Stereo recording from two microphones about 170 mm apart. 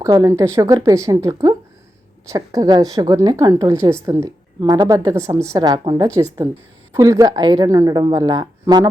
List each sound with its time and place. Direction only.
0.0 s speech: 20° right (ahead or behind)